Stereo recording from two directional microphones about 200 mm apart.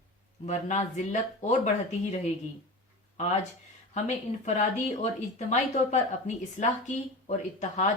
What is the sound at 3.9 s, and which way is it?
A woman's voice, 35° left (ahead or behind).